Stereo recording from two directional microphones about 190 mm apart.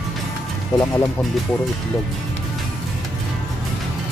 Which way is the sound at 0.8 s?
10° left (ahead or behind).